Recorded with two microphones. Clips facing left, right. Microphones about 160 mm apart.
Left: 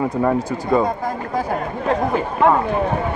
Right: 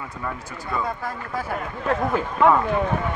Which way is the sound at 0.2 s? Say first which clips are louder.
Left 10 dB; 50° left (ahead or behind).